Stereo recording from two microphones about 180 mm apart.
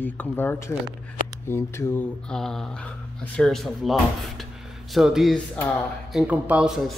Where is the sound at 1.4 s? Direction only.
15° left (ahead or behind).